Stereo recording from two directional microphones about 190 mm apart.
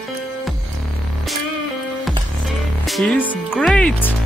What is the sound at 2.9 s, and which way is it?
Music, 5° left (ahead or behind).